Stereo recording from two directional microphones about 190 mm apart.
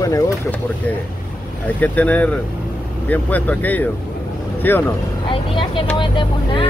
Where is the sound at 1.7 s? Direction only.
10° left (ahead or behind).